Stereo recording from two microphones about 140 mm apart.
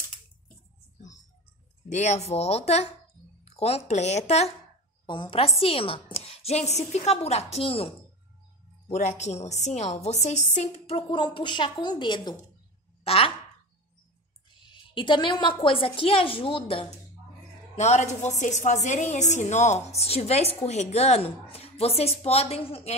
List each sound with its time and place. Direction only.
1.9 s a woman's voice: 55° left (ahead or behind)
5.0 s a woman's voice: 35° left (ahead or behind)
8.8 s a woman's voice: 55° left (ahead or behind); by 12.4 s 30° left (ahead or behind)
13.0 s speech: 45° left (ahead or behind)
14.7 s speech: 35° left (ahead or behind)
17.7 s a woman's voice: 55° left (ahead or behind)